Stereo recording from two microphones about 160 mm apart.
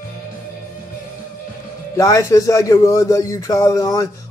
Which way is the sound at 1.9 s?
20° left (ahead or behind).